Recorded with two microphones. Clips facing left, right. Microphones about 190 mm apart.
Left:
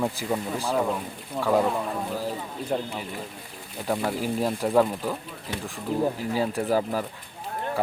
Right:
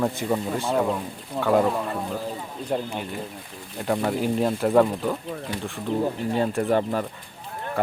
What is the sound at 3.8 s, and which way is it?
Speech, centre (ahead or behind).